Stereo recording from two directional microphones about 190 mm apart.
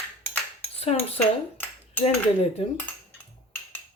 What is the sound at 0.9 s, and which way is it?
Cutlery, 35° left (ahead or behind).